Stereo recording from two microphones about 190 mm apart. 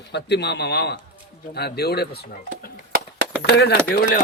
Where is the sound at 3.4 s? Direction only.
60° left (ahead or behind).